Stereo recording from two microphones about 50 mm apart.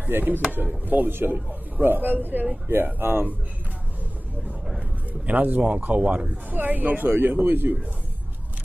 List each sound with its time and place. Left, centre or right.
0.1 s speech: right
4.7 s a sound: right
5.8 s speech: right